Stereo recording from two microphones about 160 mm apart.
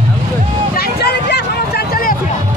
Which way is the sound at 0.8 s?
90° left.